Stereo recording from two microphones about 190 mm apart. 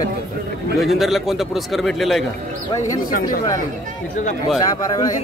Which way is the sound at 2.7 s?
15° left (ahead or behind).